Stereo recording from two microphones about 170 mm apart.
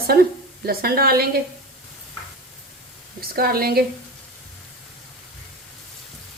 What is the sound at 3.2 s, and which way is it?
Speech, 60° right (ahead or behind).